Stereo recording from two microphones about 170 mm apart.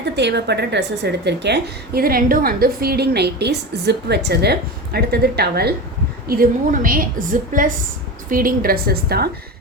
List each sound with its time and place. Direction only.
0.0 s a woman's voice: 85° right; by 5.7 s 70° right (ahead or behind)
6.2 s a woman's voice: 60° right (ahead or behind)